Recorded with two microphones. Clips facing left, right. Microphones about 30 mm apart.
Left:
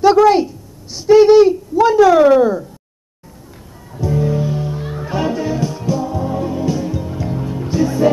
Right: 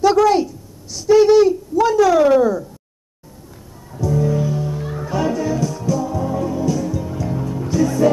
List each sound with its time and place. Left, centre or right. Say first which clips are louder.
0.0 s speech: left 3 dB; left
4.0 s music: left 1 dB; left